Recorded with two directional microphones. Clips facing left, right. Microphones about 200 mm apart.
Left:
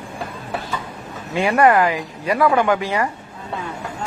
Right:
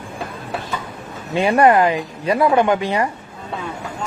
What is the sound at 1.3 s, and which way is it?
Speech, 25° right (ahead or behind).